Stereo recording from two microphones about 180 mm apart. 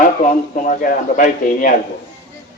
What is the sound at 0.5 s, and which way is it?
A man's voice, 45° left (ahead or behind).